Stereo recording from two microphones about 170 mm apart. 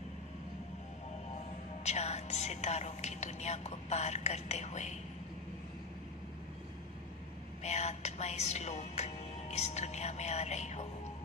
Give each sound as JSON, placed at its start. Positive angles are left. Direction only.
{"t": 1.9, "sound": "music", "side_deg": 40}
{"t": 7.6, "sound": "music", "side_deg": 40}